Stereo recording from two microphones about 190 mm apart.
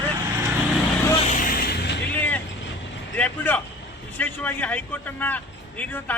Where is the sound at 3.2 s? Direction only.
10° left (ahead or behind).